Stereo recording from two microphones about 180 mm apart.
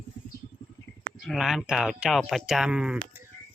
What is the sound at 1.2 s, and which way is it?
Speech, centre (ahead or behind).